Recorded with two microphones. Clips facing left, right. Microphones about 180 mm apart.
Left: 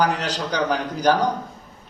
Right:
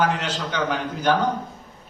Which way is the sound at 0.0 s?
40° left (ahead or behind).